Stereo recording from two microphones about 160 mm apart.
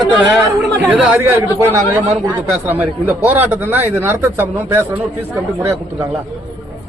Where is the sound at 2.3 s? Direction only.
10° right (ahead or behind).